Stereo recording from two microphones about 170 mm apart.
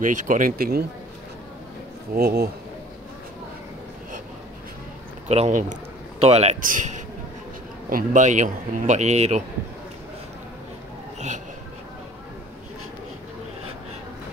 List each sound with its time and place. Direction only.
0.0 s a man's voice: 50° right (ahead or behind)
2.1 s speech: 65° right (ahead or behind)
5.3 s a man's voice: 45° right (ahead or behind)
11.1 s a sound: 45° right (ahead or behind)